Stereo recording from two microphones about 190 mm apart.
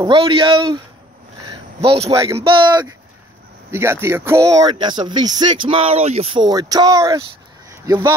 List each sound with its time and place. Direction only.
0.0 s speech: 25° right (ahead or behind)
1.5 s a sound: 30° right (ahead or behind)
2.2 s speech: 30° right (ahead or behind)